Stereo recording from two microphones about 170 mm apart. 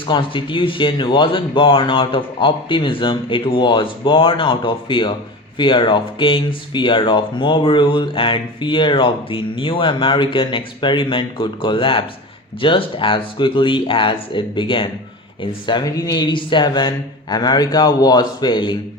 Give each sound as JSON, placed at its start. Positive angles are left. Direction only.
{"t": 0.1, "sound": "speech", "side_deg": 30}